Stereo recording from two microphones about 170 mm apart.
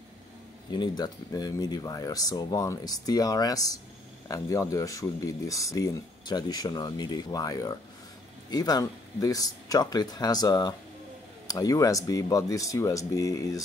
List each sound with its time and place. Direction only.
0.7 s speech: 25° left (ahead or behind)